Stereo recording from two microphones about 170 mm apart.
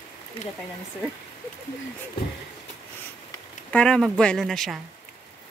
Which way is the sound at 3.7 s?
5° left (ahead or behind).